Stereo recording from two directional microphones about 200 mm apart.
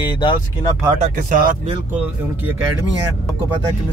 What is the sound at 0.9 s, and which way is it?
Speech, 40° right (ahead or behind).